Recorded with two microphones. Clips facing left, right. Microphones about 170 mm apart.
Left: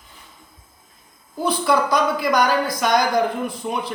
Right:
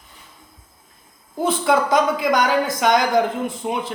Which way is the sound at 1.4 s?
20° right (ahead or behind).